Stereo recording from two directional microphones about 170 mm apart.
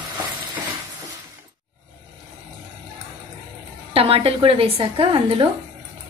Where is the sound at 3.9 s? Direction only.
35° right (ahead or behind).